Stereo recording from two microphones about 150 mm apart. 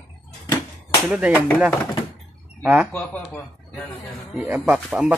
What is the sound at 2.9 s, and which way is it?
Speech, 10° left (ahead or behind).